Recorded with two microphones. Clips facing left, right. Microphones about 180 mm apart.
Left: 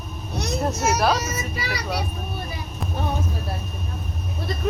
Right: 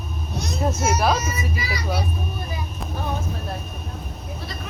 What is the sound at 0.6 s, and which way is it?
Speech, centre (ahead or behind).